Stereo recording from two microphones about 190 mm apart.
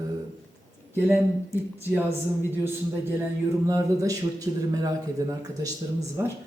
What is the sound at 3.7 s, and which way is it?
Speech, 15° right (ahead or behind).